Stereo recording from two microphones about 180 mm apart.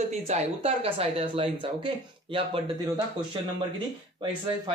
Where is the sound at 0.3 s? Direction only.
35° right (ahead or behind).